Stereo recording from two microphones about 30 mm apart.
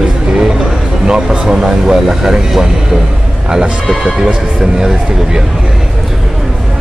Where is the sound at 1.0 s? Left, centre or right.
Right.